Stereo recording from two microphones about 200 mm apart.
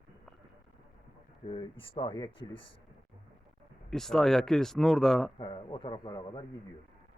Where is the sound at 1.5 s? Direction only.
25° left (ahead or behind).